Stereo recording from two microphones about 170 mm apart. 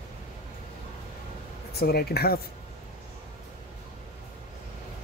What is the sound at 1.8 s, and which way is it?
Speech, 65° left (ahead or behind).